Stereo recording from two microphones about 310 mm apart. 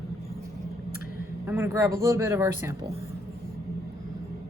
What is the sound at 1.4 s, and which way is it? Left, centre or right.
Speech, centre.